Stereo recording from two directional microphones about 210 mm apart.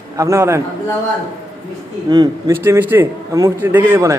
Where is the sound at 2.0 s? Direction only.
20° right (ahead or behind).